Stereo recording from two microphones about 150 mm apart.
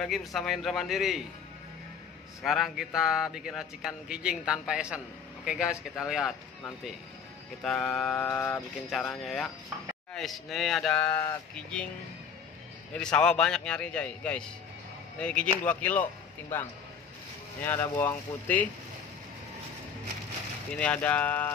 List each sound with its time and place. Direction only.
0.0 s speech: centre (ahead or behind)
2.4 s speech: centre (ahead or behind)
7.6 s a man's voice: 5° left (ahead or behind)
8.7 s speech: centre (ahead or behind)
12.9 s a man's voice: 5° left (ahead or behind)
17.6 s a man's voice: 10° left (ahead or behind)
20.7 s a man's voice: 10° left (ahead or behind)